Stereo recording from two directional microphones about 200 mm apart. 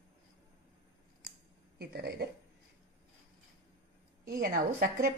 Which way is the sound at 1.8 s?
50° right (ahead or behind).